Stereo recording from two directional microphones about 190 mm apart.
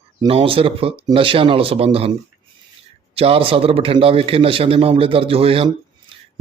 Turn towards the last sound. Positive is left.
turn(degrees=-30)  # may be behind; listen again after turning